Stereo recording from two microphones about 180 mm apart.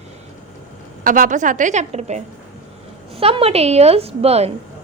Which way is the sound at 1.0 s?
50° right (ahead or behind).